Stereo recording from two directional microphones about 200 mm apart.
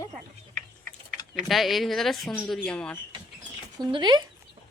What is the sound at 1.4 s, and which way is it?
Speech, centre (ahead or behind).